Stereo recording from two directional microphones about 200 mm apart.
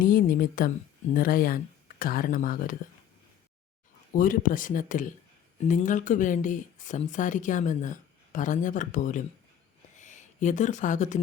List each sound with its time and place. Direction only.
0.0 s speech: 45° left (ahead or behind)
4.1 s speech: 45° left (ahead or behind)